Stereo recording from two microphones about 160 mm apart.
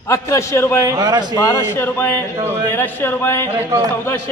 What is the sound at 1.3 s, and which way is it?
Speech, 15° left (ahead or behind).